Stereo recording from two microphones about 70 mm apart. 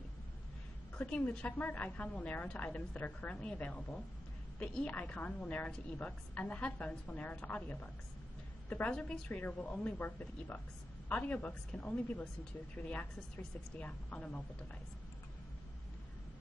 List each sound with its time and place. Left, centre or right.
0.9 s a woman's voice: centre
11.1 s a woman's voice: centre